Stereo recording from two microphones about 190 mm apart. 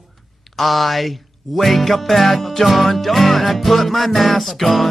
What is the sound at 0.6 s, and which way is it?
Music, centre (ahead or behind).